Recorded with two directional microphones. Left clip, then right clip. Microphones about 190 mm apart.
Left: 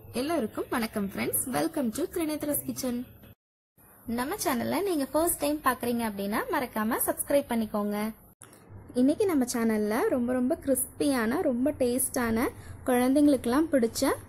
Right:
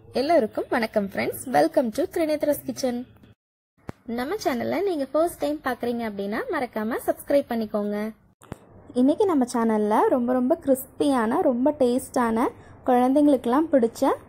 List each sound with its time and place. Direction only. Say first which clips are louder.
0.1 s a woman's voice: right 9 dB; 20° right (ahead or behind)
4.1 s a woman's voice: right 4 dB; 15° right (ahead or behind)
9.3 s a woman's voice: right 5 dB; centre (ahead or behind)
12.2 s a woman's voice: right 6 dB; centre (ahead or behind)